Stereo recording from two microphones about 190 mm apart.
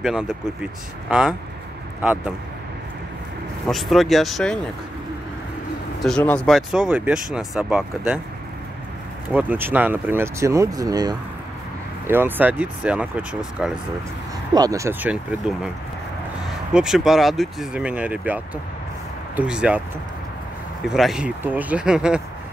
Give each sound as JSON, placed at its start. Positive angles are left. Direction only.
{"t": 0.0, "sound": "speech", "side_deg": -5}
{"t": 2.0, "sound": "speech", "side_deg": -5}
{"t": 3.6, "sound": "speech", "side_deg": 0}
{"t": 6.0, "sound": "speech", "side_deg": 5}
{"t": 9.3, "sound": "speech", "side_deg": -10}
{"t": 14.5, "sound": "speech", "side_deg": -20}
{"t": 20.9, "sound": "speech", "side_deg": -5}